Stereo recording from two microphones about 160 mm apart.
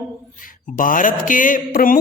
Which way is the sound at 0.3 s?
55° left (ahead or behind).